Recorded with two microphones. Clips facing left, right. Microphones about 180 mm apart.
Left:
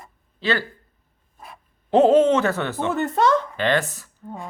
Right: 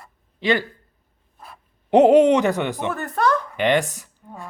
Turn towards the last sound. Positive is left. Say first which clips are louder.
# right 2 dB
turn(degrees=-15)  # may be behind; listen again after turning